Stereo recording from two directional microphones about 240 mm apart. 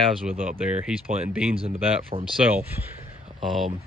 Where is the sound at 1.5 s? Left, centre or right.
Right.